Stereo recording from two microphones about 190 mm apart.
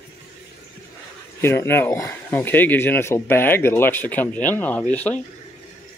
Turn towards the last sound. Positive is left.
turn(degrees=5)  # may be behind; listen again after turning